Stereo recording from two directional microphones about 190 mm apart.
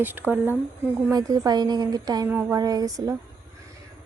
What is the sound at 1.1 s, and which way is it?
A woman's voice, 20° right (ahead or behind).